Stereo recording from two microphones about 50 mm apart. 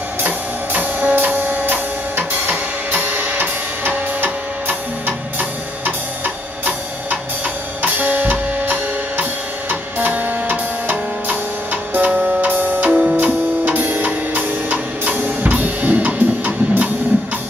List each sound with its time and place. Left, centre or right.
0.7 s music: right
15.1 s music: right